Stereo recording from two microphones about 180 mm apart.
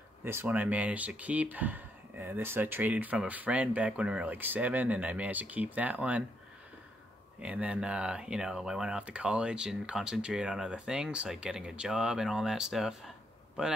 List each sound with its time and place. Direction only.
0.2 s speech: 15° right (ahead or behind)
7.4 s speech: 5° right (ahead or behind)